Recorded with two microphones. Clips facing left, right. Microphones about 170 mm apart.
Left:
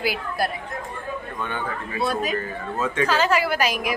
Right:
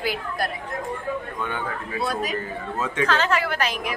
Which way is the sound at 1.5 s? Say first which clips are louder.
Even; 5° left (ahead or behind).